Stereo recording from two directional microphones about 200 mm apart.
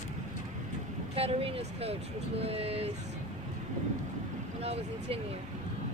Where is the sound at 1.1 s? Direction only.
30° right (ahead or behind).